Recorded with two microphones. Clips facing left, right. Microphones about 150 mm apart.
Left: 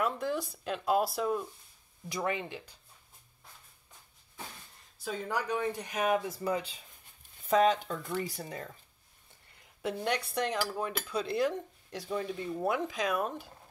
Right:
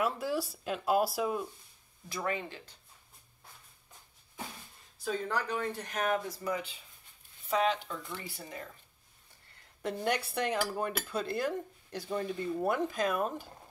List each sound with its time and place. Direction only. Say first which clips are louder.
0.0 s speech: even; 5° right (ahead or behind)
2.0 s speech: left 2 dB; 20° left (ahead or behind)
4.9 s speech: right 1 dB; 5° left (ahead or behind)
6.3 s speech: left 3 dB; 30° left (ahead or behind)
7.4 s speech: left 4 dB; 45° left (ahead or behind)
9.8 s a woman's voice: even; 5° left (ahead or behind)
10.1 s dishes: even; 5° right (ahead or behind)
11.3 s speech: left 3 dB; centre (ahead or behind)